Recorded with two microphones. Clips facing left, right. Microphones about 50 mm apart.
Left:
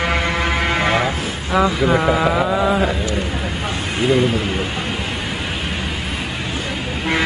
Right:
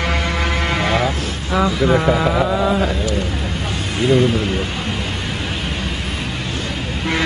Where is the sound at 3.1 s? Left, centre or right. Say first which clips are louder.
Even; centre.